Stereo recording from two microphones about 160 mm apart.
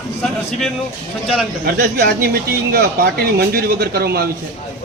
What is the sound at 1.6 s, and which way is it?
Speech, 85° right.